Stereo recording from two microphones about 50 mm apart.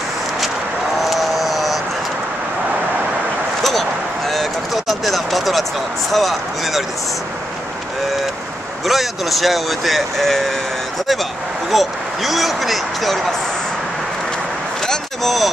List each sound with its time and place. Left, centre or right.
1.0 s vehicle: centre
4.3 s speech: centre
8.8 s speech: centre
11.7 s speech: centre
14.9 s a sound: centre